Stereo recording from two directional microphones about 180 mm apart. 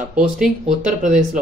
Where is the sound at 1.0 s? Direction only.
45° right (ahead or behind).